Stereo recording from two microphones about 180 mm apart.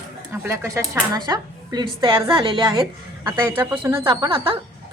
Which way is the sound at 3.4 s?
10° right (ahead or behind).